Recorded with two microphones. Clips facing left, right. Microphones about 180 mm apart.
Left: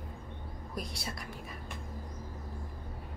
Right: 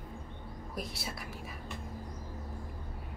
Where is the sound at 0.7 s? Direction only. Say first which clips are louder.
Even; 5° right (ahead or behind).